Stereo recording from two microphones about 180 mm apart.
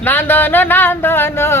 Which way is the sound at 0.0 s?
10° left (ahead or behind).